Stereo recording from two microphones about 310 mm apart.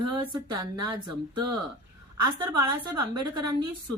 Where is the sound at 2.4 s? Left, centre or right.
Centre.